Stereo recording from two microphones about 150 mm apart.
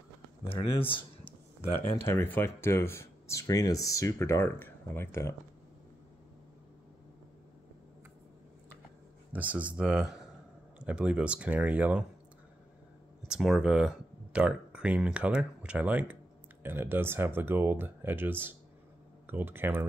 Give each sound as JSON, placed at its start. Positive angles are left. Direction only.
{"t": 0.8, "sound": "a sound", "side_deg": 35}
{"t": 2.0, "sound": "speech", "side_deg": 15}
{"t": 9.3, "sound": "speech", "side_deg": -10}
{"t": 13.3, "sound": "speech", "side_deg": -5}